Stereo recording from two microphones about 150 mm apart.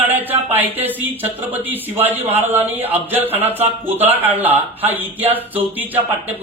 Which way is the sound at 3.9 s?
15° right (ahead or behind).